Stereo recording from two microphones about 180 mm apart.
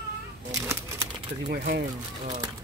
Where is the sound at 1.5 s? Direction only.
55° right (ahead or behind).